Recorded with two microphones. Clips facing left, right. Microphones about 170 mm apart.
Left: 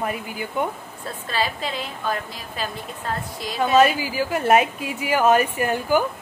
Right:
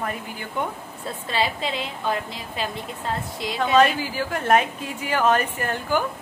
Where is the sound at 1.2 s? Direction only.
20° right (ahead or behind).